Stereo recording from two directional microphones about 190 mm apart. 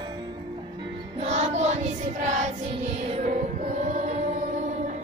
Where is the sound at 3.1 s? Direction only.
40° right (ahead or behind).